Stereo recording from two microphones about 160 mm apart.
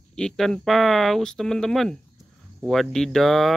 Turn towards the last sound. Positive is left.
turn(degrees=0)  # may be behind; listen again after turning